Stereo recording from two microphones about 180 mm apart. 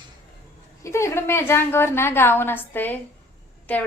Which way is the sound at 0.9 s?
15° left (ahead or behind).